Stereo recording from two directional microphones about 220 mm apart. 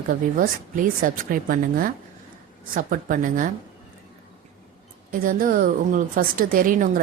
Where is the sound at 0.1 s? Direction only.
40° right (ahead or behind).